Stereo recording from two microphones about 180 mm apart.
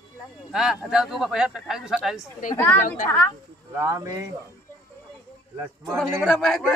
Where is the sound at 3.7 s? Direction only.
15° right (ahead or behind).